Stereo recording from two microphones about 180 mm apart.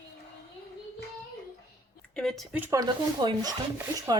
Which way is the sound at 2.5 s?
10° right (ahead or behind).